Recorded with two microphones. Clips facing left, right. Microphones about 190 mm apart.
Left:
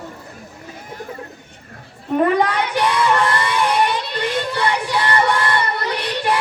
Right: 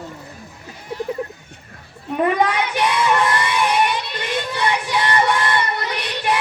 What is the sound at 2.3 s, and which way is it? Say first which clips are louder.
Child singing: left 1 dB; 15° right (ahead or behind).